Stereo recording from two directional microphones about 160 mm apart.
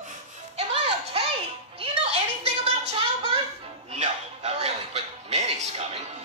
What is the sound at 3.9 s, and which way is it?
Music, 45° right (ahead or behind).